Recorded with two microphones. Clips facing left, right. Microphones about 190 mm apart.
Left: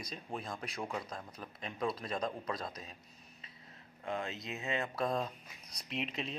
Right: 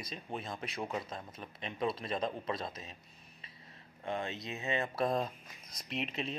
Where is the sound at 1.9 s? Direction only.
25° right (ahead or behind).